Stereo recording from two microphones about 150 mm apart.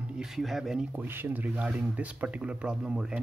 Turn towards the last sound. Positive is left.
turn(degrees=-5)  # may be behind; listen again after turning